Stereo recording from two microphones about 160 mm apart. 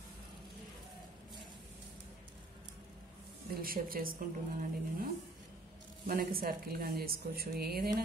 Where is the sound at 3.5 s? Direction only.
65° right (ahead or behind).